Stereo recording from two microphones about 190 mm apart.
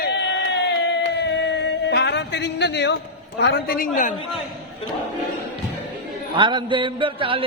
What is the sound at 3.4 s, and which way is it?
Speech, 55° left (ahead or behind).